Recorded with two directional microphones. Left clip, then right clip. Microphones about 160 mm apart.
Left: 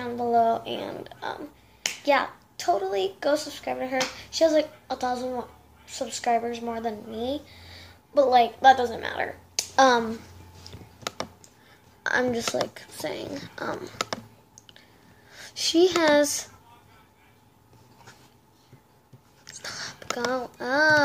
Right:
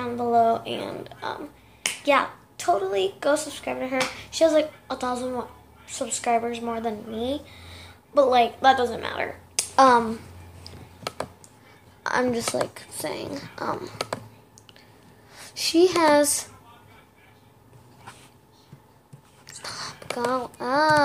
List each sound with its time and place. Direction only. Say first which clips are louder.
0.0 s a woman's voice: right 2 dB; centre (ahead or behind)
12.0 s speech: right 1 dB; 5° left (ahead or behind)
15.3 s speech: right 1 dB; 5° left (ahead or behind)
19.4 s a child's voice: right 1 dB; 10° left (ahead or behind)